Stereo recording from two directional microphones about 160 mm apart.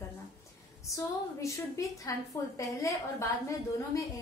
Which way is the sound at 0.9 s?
20° left (ahead or behind).